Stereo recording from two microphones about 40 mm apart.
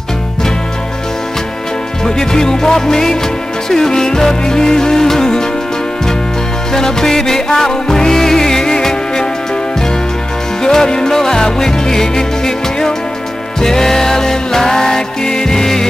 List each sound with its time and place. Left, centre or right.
2.0 s music: centre
6.7 s music: centre
10.6 s music: centre